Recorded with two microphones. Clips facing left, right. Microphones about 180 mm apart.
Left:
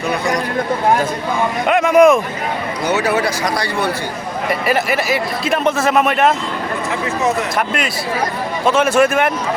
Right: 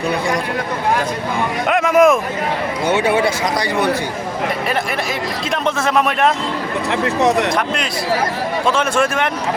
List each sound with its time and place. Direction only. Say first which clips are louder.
1.6 s speech: left 2 dB; centre (ahead or behind)
2.8 s speech: right 1 dB; 25° right (ahead or behind)
4.6 s speech: left 3 dB; 5° left (ahead or behind)
7.0 s speech: right 4 dB; 70° right (ahead or behind)
8.6 s speech: left 5 dB; 5° left (ahead or behind)